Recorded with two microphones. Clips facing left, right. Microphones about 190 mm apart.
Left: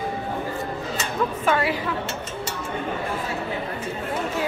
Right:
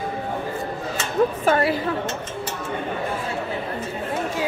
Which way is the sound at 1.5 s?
40° right (ahead or behind).